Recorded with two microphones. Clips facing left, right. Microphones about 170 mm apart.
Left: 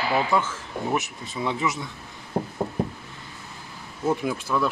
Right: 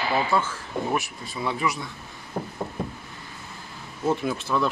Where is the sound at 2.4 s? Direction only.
30° left (ahead or behind).